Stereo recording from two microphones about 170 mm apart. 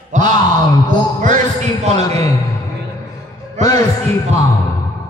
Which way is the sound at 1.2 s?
45° right (ahead or behind).